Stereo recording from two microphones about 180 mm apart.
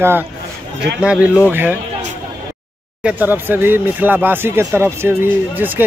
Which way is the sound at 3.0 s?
5° right (ahead or behind).